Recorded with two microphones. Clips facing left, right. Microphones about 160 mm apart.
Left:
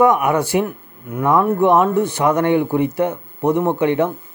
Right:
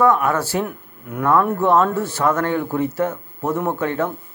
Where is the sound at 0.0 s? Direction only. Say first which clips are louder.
Left 2 dB; 20° left (ahead or behind).